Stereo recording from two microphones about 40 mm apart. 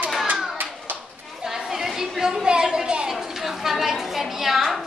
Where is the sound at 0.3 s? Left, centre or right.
Right.